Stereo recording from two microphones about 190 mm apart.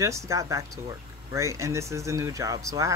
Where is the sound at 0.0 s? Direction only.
15° right (ahead or behind).